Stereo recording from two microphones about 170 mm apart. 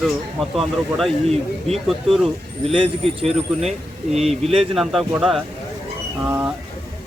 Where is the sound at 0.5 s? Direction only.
Centre (ahead or behind).